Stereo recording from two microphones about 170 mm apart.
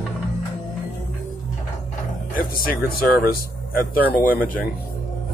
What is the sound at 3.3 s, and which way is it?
Speech, 60° left (ahead or behind).